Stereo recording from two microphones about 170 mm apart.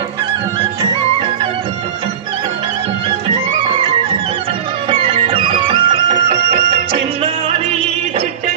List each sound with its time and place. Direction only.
4.9 s music: 30° right (ahead or behind)